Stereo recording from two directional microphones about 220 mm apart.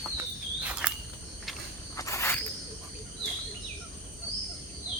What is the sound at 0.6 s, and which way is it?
Cricket, 5° right (ahead or behind).